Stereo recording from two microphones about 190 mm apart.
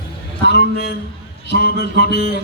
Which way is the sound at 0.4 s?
60° left (ahead or behind).